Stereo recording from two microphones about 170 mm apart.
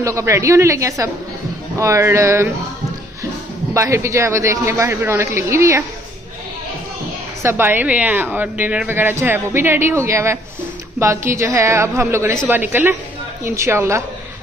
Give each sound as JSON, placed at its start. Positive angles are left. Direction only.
{"t": 0.0, "sound": "a woman's voice", "side_deg": -15}
{"t": 3.7, "sound": "a woman's voice", "side_deg": -15}
{"t": 7.4, "sound": "a woman's voice", "side_deg": -10}